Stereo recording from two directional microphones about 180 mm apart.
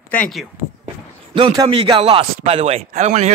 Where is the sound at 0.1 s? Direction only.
5° left (ahead or behind).